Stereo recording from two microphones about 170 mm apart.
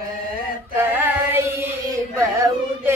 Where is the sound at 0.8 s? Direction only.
15° right (ahead or behind).